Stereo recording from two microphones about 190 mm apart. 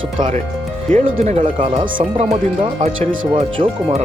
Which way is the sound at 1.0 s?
35° right (ahead or behind).